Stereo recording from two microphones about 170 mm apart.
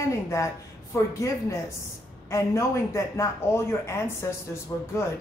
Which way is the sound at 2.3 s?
15° left (ahead or behind).